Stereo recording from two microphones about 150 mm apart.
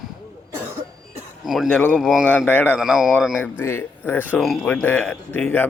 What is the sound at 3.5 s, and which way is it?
Speech, 15° left (ahead or behind).